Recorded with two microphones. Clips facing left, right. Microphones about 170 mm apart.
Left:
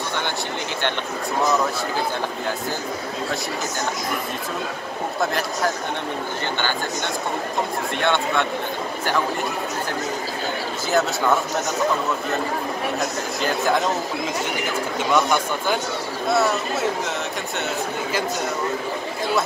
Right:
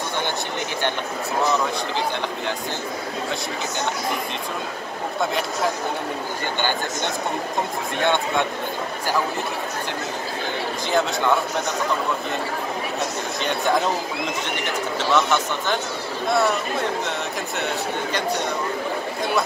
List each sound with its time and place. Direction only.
8.0 s speech: 15° right (ahead or behind)
10.9 s speech: 5° left (ahead or behind)
13.4 s speech: centre (ahead or behind)
15.1 s speech: 10° left (ahead or behind)